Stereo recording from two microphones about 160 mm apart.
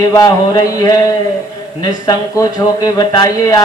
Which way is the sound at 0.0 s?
25° left (ahead or behind).